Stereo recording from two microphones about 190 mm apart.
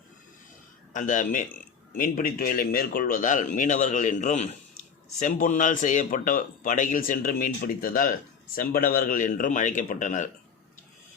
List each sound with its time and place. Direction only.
0.9 s speech: 45° left (ahead or behind)